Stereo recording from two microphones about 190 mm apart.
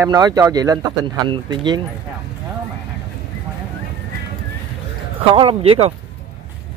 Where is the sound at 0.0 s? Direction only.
20° right (ahead or behind).